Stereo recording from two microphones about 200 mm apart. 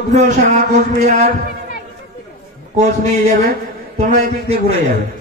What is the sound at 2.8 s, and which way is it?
A man's voice, 35° right (ahead or behind).